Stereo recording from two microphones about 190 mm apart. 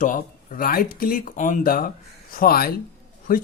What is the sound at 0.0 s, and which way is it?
Speech, 45° left (ahead or behind).